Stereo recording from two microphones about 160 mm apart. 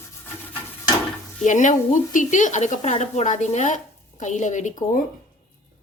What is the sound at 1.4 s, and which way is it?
Speech, 50° left (ahead or behind).